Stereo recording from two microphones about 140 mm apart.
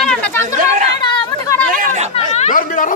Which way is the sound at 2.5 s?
70° left (ahead or behind).